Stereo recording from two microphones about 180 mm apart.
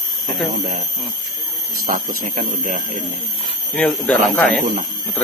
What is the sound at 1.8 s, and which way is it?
Speech, 45° right (ahead or behind).